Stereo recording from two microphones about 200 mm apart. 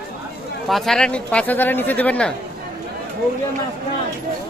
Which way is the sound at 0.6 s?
Centre (ahead or behind).